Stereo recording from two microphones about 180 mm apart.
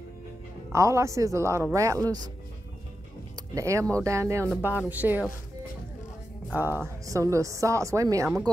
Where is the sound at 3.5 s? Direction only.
15° right (ahead or behind).